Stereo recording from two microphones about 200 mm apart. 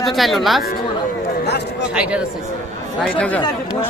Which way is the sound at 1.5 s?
55° left (ahead or behind).